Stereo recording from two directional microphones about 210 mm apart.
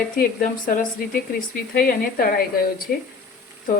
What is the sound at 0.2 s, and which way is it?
Speech, 40° left (ahead or behind).